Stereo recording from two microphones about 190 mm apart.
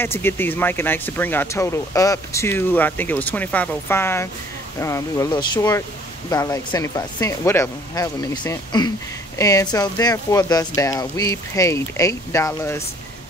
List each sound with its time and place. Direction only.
0.0 s speech: 10° left (ahead or behind)